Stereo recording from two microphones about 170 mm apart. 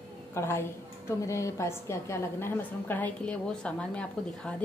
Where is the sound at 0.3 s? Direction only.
15° left (ahead or behind).